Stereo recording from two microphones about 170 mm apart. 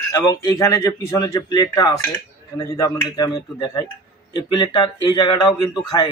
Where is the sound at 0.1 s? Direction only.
20° left (ahead or behind).